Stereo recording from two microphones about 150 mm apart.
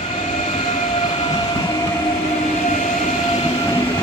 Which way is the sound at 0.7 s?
50° left (ahead or behind).